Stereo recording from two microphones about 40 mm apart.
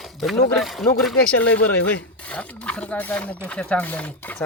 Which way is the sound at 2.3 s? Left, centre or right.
Left.